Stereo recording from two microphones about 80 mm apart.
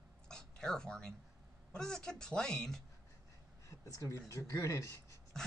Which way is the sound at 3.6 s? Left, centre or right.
Left.